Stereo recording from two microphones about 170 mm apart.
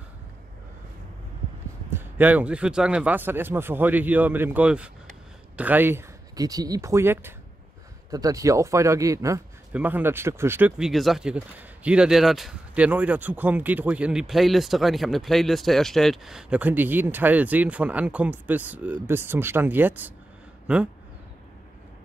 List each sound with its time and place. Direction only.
1.9 s speech: 10° right (ahead or behind)
10.9 s speech: centre (ahead or behind)